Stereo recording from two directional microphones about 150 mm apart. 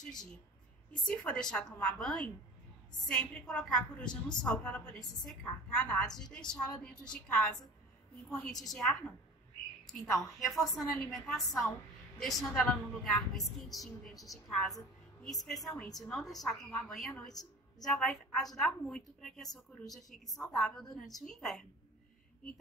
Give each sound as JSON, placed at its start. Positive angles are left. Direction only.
{"t": 0.0, "sound": "a woman's voice", "side_deg": 5}
{"t": 17.3, "sound": "a sound", "side_deg": 25}
{"t": 17.8, "sound": "a woman's voice", "side_deg": 0}